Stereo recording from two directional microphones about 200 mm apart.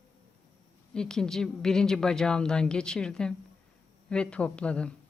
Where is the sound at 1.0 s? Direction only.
5° left (ahead or behind).